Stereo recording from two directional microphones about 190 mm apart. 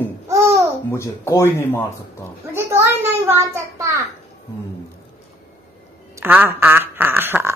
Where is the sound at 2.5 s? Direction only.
15° right (ahead or behind).